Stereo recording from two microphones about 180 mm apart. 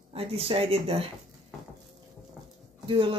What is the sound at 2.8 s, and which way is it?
Speech, 30° right (ahead or behind).